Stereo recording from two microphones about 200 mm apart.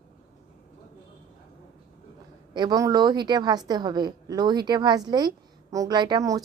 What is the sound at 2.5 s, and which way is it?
A woman's voice, 20° right (ahead or behind).